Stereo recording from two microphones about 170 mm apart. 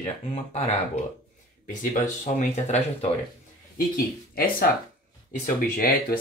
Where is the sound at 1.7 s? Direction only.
45° left (ahead or behind).